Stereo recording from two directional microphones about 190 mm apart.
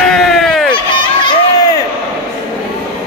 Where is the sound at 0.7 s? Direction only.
25° left (ahead or behind).